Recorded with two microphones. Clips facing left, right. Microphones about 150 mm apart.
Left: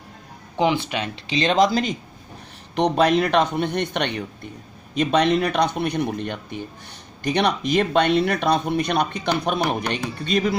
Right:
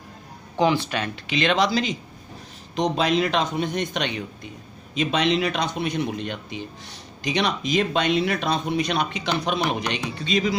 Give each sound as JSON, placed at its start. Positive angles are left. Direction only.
{"t": 0.6, "sound": "speech", "side_deg": 20}
{"t": 1.3, "sound": "speech", "side_deg": 35}
{"t": 2.7, "sound": "speech", "side_deg": 60}